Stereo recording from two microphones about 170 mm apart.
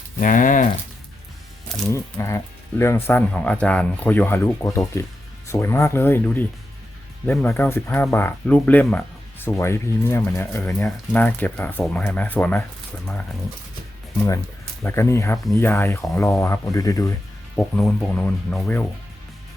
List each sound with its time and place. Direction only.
0.2 s speech: 50° left (ahead or behind)
1.9 s speech: 15° left (ahead or behind)
14.8 s speech: 15° left (ahead or behind)
17.8 s speech: 5° left (ahead or behind)